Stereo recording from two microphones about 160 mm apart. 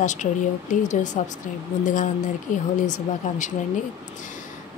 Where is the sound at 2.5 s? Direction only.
55° left (ahead or behind).